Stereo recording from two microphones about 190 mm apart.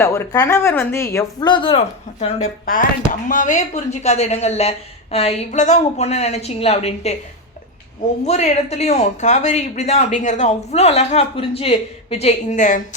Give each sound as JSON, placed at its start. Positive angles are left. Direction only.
{"t": 0.0, "sound": "speech", "side_deg": 15}
{"t": 8.3, "sound": "speech", "side_deg": 35}